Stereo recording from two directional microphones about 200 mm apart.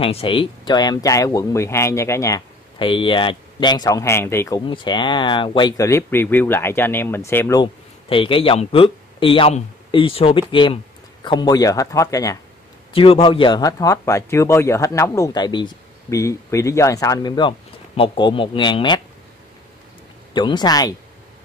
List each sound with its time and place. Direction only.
0.0 s a man's voice: 25° left (ahead or behind)
4.6 s a man's voice: 25° left (ahead or behind)
7.6 s a man's voice: 25° left (ahead or behind)
12.9 s a man's voice: 25° left (ahead or behind)
20.3 s speech: 20° left (ahead or behind)